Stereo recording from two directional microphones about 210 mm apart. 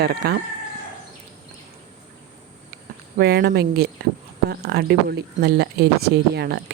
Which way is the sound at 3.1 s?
50° right (ahead or behind).